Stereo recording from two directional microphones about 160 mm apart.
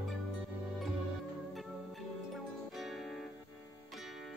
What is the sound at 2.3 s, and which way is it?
Music, centre (ahead or behind).